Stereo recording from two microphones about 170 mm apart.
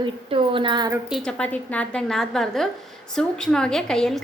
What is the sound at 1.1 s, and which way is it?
A woman's voice, 5° left (ahead or behind).